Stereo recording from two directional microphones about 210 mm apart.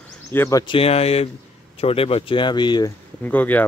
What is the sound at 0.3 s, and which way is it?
Speech, 15° left (ahead or behind).